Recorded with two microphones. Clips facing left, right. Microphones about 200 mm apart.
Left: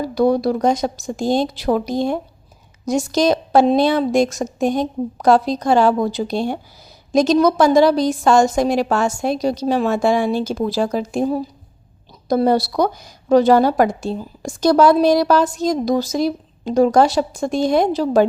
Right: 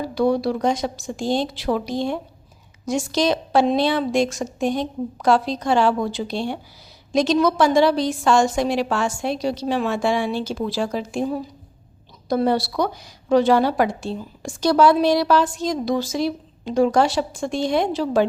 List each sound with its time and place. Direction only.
0.0 s a woman's voice: 40° left (ahead or behind)